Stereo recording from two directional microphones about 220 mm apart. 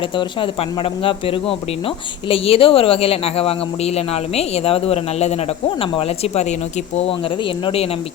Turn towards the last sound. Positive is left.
turn(degrees=25)  # may be behind; listen again after turning